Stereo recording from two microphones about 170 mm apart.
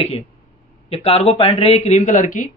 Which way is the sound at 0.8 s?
35° left (ahead or behind).